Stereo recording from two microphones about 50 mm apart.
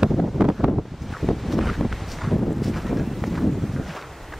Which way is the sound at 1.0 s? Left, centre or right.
Centre.